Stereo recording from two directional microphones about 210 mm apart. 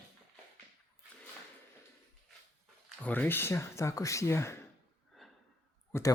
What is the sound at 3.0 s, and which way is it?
Speech, 10° left (ahead or behind).